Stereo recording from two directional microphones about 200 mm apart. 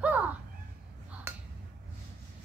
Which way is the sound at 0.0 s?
5° right (ahead or behind).